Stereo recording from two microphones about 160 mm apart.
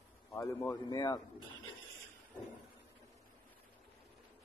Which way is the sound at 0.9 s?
30° left (ahead or behind).